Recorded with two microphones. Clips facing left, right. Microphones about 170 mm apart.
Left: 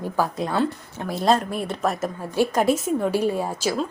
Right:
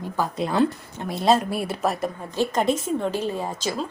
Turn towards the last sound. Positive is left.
turn(degrees=10)  # may be behind; listen again after turning